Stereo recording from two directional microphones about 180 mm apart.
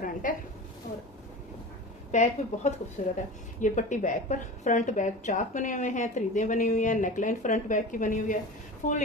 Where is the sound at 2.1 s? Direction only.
40° left (ahead or behind).